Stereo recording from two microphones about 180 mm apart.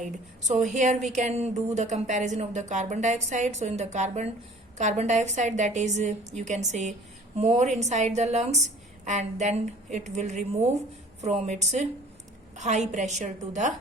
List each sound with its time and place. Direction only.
0.0 s a woman's voice: 40° right (ahead or behind)